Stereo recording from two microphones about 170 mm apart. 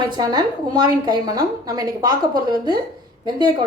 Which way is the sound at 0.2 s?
25° right (ahead or behind).